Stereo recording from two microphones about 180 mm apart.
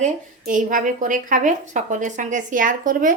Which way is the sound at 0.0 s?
45° right (ahead or behind).